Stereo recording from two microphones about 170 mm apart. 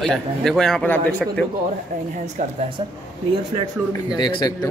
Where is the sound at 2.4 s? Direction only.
45° right (ahead or behind).